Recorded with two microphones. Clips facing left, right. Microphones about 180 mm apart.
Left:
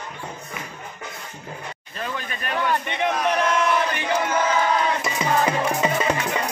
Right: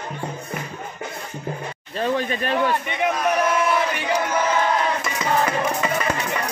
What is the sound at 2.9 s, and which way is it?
Battle cry, 5° right (ahead or behind).